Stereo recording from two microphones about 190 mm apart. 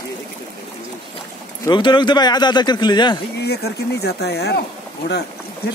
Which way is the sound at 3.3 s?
60° left (ahead or behind).